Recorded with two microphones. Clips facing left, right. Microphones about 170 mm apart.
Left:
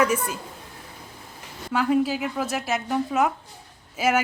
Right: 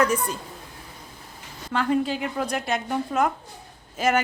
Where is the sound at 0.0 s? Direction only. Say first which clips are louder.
Even; 10° left (ahead or behind).